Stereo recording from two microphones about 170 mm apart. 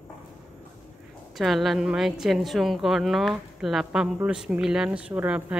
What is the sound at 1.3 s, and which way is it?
A woman's voice, centre (ahead or behind).